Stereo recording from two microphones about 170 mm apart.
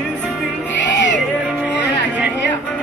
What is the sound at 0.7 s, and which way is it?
Music, 90° left.